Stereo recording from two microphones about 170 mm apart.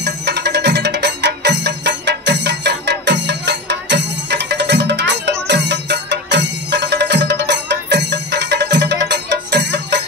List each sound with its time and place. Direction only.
0.0 s music: 75° right (ahead or behind)